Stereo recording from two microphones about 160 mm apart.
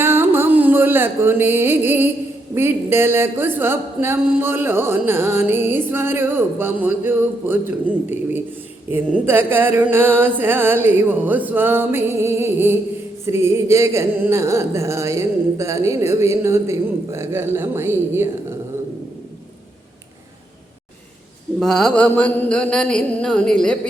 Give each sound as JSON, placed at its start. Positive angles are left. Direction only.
{"t": 0.0, "sound": "music", "side_deg": -15}
{"t": 2.6, "sound": "speech", "side_deg": -15}
{"t": 21.6, "sound": "mantra", "side_deg": 5}